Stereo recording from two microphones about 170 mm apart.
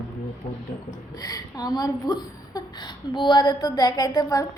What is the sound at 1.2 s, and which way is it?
A woman's voice, 20° left (ahead or behind).